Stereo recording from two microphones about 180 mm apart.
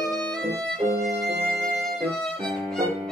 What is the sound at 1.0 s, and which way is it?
Violin, 60° right (ahead or behind).